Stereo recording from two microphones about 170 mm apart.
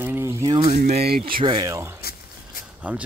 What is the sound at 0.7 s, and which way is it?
Speech, 60° right (ahead or behind).